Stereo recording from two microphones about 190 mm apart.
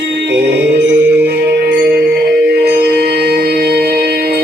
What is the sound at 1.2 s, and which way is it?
Music, 60° right (ahead or behind).